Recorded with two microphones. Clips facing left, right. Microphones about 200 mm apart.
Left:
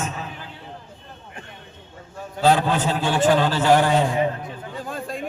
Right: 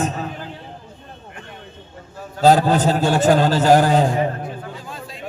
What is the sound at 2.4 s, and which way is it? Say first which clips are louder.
A man's voice: right 5 dB; 40° right (ahead or behind).